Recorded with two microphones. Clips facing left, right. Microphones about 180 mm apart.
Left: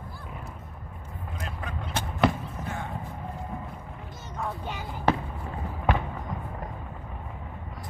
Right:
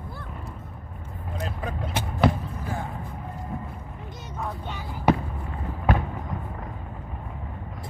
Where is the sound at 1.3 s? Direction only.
35° right (ahead or behind).